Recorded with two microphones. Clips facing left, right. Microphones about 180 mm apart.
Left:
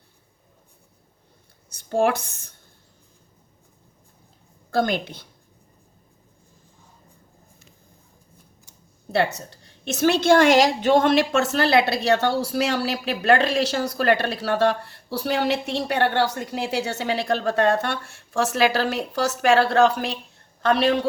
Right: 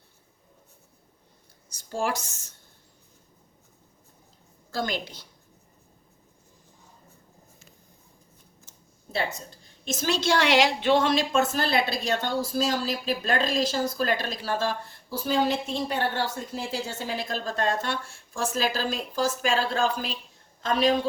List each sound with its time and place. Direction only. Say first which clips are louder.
1.7 s speech: left 8 dB; 60° left (ahead or behind)
4.7 s speech: left 7 dB; 55° left (ahead or behind)
9.1 s a woman's voice: left 8 dB; 70° left (ahead or behind)